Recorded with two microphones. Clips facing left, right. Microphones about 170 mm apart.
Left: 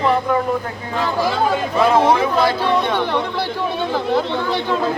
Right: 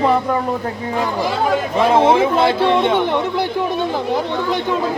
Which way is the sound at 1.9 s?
25° right (ahead or behind).